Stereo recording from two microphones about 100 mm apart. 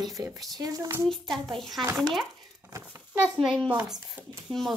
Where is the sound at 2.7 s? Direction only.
25° right (ahead or behind).